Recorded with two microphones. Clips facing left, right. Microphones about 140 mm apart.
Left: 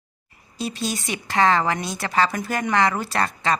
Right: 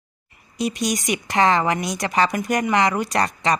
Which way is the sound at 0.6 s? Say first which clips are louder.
Right 4 dB; 15° right (ahead or behind).